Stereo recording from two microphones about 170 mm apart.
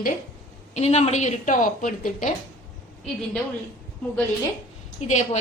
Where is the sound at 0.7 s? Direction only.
40° left (ahead or behind).